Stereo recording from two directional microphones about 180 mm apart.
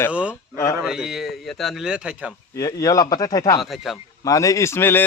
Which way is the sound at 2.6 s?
20° left (ahead or behind).